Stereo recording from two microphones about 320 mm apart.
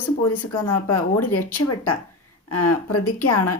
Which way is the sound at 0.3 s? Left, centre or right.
Left.